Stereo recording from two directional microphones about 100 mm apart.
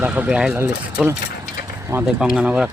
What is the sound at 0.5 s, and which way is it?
Speech, 20° right (ahead or behind).